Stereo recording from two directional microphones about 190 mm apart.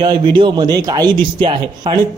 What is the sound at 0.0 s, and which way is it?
Speech, 25° right (ahead or behind).